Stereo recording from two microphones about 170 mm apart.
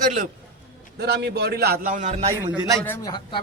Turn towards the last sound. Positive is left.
turn(degrees=25)  # may be behind; listen again after turning